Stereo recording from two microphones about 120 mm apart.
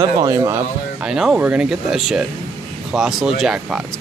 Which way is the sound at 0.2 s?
30° right (ahead or behind).